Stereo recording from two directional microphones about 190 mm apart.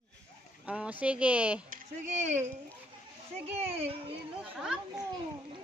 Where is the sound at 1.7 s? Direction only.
40° right (ahead or behind).